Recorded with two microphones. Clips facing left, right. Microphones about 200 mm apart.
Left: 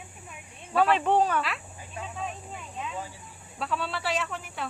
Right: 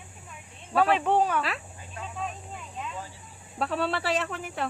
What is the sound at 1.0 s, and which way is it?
Speech, 10° right (ahead or behind).